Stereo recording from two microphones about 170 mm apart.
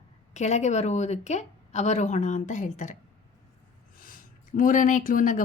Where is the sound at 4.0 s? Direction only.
55° left (ahead or behind).